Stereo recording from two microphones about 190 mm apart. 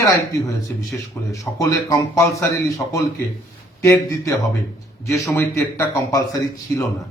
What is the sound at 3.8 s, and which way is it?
A man's voice, 15° left (ahead or behind).